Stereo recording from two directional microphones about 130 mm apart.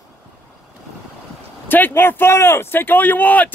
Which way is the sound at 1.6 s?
15° left (ahead or behind).